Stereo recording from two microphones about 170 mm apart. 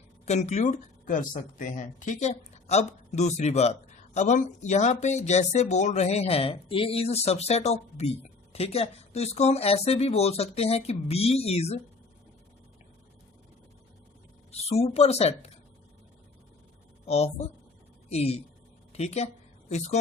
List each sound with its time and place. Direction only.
0.3 s speech: 40° left (ahead or behind)
14.5 s speech: 35° left (ahead or behind)
17.1 s speech: 40° left (ahead or behind)